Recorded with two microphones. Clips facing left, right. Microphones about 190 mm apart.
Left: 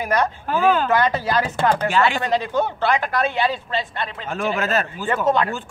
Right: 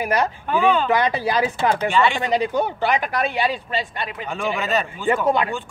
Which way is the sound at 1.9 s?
Centre (ahead or behind).